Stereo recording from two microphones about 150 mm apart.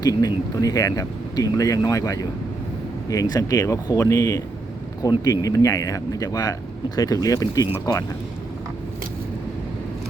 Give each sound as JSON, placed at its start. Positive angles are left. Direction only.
{"t": 0.0, "sound": "speech", "side_deg": 25}